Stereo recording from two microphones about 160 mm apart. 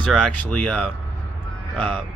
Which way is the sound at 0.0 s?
5° left (ahead or behind).